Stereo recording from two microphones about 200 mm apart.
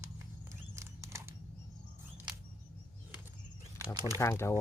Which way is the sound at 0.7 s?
15° right (ahead or behind).